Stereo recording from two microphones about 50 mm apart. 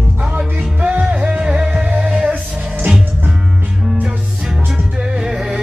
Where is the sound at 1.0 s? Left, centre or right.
Right.